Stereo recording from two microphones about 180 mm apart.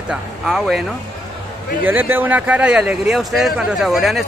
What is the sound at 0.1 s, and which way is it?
Speech, centre (ahead or behind).